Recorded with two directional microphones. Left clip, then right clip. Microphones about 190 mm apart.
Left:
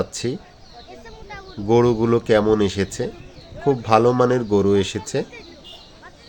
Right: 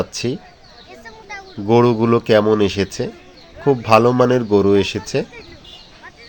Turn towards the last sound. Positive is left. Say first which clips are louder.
# right 4 dB
turn(degrees=-5)  # may be behind; listen again after turning